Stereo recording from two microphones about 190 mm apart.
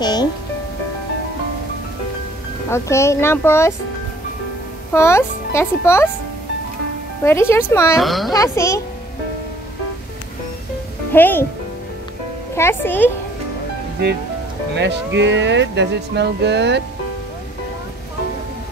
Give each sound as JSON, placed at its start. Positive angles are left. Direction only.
{"t": 0.0, "sound": "music", "side_deg": 20}
{"t": 2.7, "sound": "speech", "side_deg": 15}
{"t": 4.9, "sound": "speech", "side_deg": 15}
{"t": 7.2, "sound": "speech", "side_deg": 15}
{"t": 8.0, "sound": "a woman's voice", "side_deg": 0}
{"t": 8.3, "sound": "speech", "side_deg": 15}
{"t": 11.1, "sound": "speech", "side_deg": 10}
{"t": 12.5, "sound": "speech", "side_deg": 10}
{"t": 15.1, "sound": "speech", "side_deg": -70}